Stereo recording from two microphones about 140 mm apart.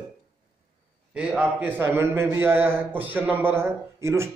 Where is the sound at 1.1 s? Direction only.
5° right (ahead or behind).